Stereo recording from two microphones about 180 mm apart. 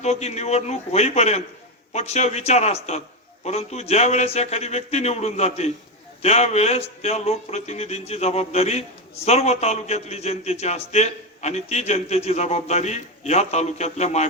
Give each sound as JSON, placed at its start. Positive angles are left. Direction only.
{"t": 0.0, "sound": "a man's voice", "side_deg": 35}